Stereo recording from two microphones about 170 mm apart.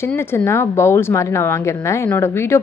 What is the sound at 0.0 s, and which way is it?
A woman's voice, 15° left (ahead or behind).